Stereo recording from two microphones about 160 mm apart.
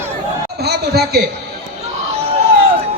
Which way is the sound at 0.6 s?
90° right.